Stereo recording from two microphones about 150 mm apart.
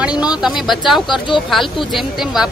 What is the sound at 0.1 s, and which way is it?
Speech, 25° left (ahead or behind).